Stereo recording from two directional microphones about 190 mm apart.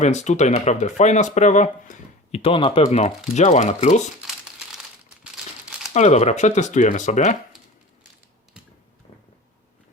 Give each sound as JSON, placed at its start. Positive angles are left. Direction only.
{"t": 0.0, "sound": "speech", "side_deg": 40}
{"t": 5.9, "sound": "speech", "side_deg": 35}